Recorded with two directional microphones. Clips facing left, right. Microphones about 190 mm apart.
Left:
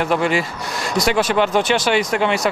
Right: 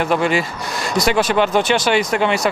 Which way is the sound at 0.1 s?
25° right (ahead or behind).